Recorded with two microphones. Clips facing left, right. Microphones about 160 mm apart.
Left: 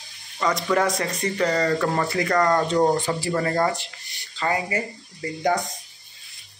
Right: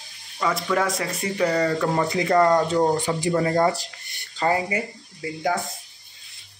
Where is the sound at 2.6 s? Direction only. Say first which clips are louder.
Left 1 dB; 10° right (ahead or behind).